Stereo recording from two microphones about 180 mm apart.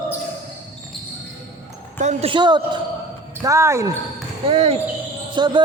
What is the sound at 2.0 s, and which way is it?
Speech, 40° right (ahead or behind).